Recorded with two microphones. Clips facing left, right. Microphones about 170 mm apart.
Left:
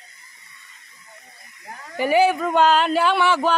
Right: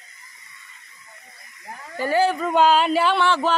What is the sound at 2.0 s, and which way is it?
Speech, 15° left (ahead or behind).